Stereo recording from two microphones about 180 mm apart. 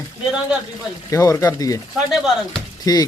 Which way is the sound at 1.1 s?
15° left (ahead or behind).